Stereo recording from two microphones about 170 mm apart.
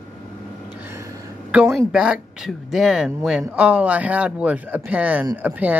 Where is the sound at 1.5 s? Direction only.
5° right (ahead or behind).